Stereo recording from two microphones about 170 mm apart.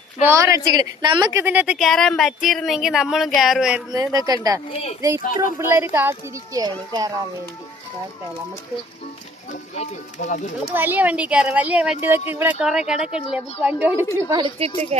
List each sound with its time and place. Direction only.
0.2 s a woman's voice: 15° right (ahead or behind)
3.9 s speech: 20° right (ahead or behind)
4.7 s speech: 35° left (ahead or behind)
4.9 s speech: 15° right (ahead or behind)
5.2 s speech: 50° left (ahead or behind)
5.5 s speech: 15° right (ahead or behind)
9.5 s speech: 40° left (ahead or behind)
10.8 s a woman's voice: 10° right (ahead or behind)
14.6 s speech: 35° right (ahead or behind)